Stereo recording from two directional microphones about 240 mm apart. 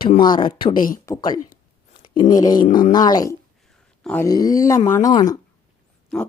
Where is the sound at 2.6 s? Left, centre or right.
Left.